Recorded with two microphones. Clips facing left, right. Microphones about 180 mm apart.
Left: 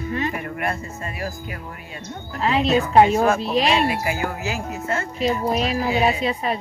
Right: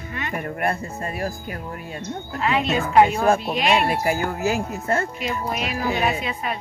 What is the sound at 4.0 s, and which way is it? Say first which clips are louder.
Speech: right 3 dB; 50° right (ahead or behind).